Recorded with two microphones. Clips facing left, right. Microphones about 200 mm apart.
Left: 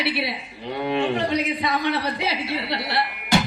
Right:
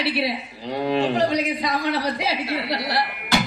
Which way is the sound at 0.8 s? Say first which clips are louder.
Right 2 dB; 35° right (ahead or behind).